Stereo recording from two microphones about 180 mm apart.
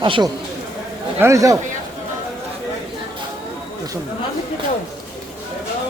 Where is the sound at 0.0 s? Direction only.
25° right (ahead or behind).